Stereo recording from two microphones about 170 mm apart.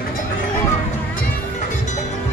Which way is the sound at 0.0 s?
55° left (ahead or behind).